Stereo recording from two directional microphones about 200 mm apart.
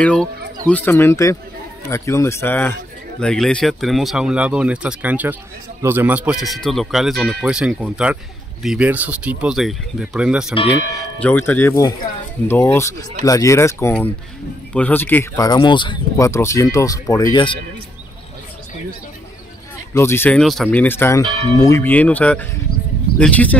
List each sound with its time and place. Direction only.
0.0 s speech: 5° left (ahead or behind)
11.1 s speech: 10° left (ahead or behind)
19.9 s speech: 10° left (ahead or behind)